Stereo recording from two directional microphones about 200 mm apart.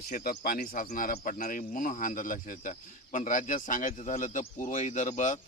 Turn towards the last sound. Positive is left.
turn(degrees=35)  # may be behind; listen again after turning